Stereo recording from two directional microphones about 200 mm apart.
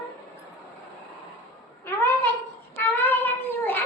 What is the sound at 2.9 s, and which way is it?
Child singing, 10° left (ahead or behind).